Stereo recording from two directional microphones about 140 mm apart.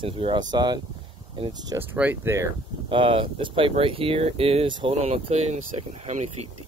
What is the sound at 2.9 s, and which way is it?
Speech, 40° right (ahead or behind).